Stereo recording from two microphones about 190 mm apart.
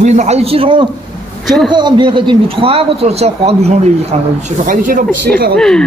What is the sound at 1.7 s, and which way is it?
A man's voice, 25° right (ahead or behind).